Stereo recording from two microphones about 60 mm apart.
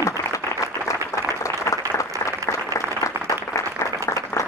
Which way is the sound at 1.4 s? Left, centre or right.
Left.